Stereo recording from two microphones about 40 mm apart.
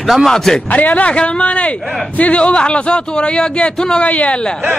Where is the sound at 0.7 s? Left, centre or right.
Left.